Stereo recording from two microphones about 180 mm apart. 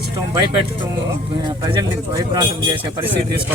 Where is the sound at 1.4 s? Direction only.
20° right (ahead or behind).